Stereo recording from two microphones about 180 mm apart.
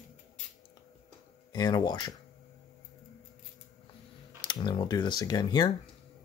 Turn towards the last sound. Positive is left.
turn(degrees=25)  # may be behind; listen again after turning